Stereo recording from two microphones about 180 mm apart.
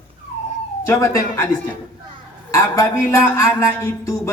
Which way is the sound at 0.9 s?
15° left (ahead or behind).